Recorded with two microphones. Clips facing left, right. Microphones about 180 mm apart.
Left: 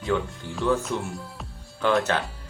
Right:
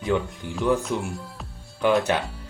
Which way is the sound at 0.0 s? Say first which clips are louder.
Right 2 dB; 15° right (ahead or behind).